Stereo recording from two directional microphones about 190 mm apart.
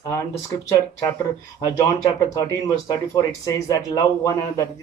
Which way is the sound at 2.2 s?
15° left (ahead or behind).